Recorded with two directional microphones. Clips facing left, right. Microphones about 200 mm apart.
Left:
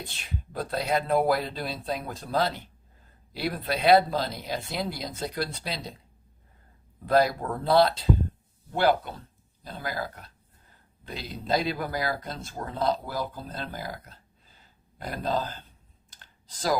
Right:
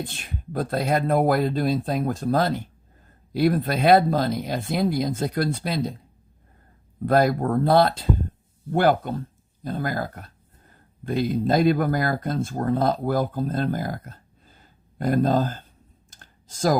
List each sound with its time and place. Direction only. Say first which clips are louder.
0.0 s speech: right 5 dB; 50° right (ahead or behind)
7.0 s speech: right 4 dB; 50° right (ahead or behind)
16.0 s computer keyboard: left 1 dB; 45° right (ahead or behind)